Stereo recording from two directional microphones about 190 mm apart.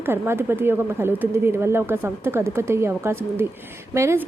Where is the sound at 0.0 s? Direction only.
10° right (ahead or behind).